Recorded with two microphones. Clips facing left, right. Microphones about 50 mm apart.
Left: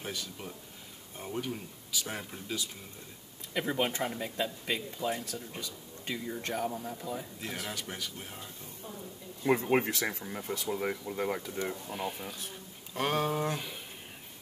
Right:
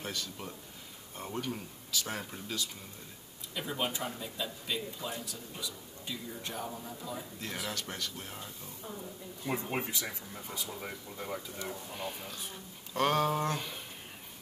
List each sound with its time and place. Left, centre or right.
0.0 s speech: centre
3.6 s a man's voice: left
7.5 s speech: left
9.4 s speech: left
11.2 s speech: left
11.9 s speech: centre